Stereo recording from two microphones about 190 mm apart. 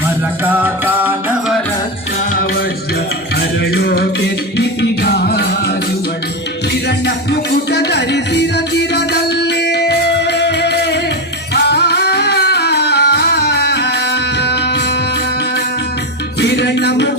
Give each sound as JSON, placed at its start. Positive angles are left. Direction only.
{"t": 0.4, "sound": "music", "side_deg": -10}
{"t": 3.6, "sound": "music", "side_deg": 55}
{"t": 6.8, "sound": "music", "side_deg": 60}
{"t": 16.4, "sound": "music", "side_deg": 65}